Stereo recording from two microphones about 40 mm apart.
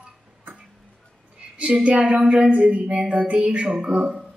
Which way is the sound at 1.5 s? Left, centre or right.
Right.